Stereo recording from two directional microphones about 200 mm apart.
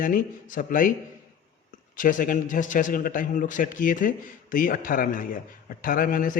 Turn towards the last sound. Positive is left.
turn(degrees=45)  # may be behind; listen again after turning